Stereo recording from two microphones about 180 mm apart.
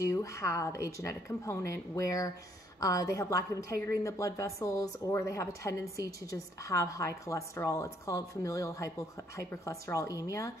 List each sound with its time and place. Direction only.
0.0 s a woman's voice: 15° left (ahead or behind)